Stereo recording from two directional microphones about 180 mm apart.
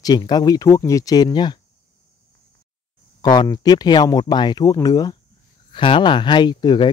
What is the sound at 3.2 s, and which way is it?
Speech, 25° left (ahead or behind).